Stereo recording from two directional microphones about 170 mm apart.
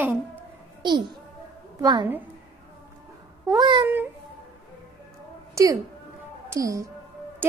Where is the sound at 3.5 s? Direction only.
25° right (ahead or behind).